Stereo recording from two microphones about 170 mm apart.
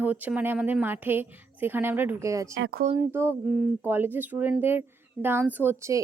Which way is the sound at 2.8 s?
50° right (ahead or behind).